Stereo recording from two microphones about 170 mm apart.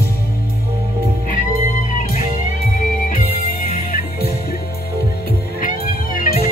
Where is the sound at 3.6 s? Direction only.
60° left (ahead or behind).